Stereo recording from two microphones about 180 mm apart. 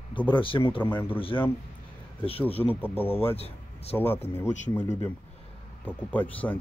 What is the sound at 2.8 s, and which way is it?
Speech, 10° left (ahead or behind).